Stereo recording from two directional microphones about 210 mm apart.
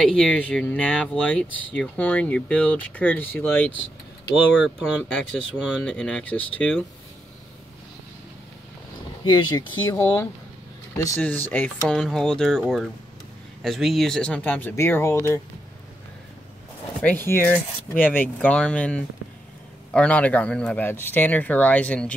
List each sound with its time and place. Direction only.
0.0 s speech: 5° left (ahead or behind)
4.6 s speech: 5° right (ahead or behind)
9.2 s speech: 20° left (ahead or behind)
17.0 s speech: 10° left (ahead or behind)